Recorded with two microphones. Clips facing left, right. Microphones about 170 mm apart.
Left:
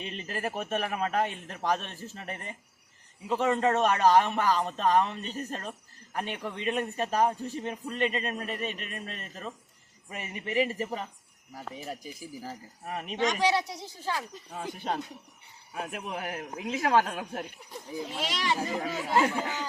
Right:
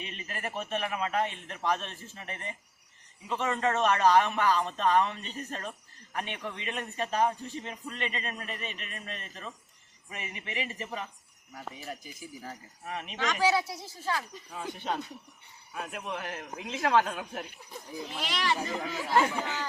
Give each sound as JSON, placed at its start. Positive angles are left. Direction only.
{"t": 0.0, "sound": "a man's voice", "side_deg": 35}
{"t": 11.9, "sound": "a man's voice", "side_deg": 35}
{"t": 13.3, "sound": "a woman's voice", "side_deg": -5}
{"t": 13.8, "sound": "speech", "side_deg": 20}
{"t": 14.5, "sound": "a man's voice", "side_deg": 40}
{"t": 16.1, "sound": "speech", "side_deg": 10}
{"t": 18.2, "sound": "speech", "side_deg": 20}
{"t": 18.5, "sound": "speech", "side_deg": 5}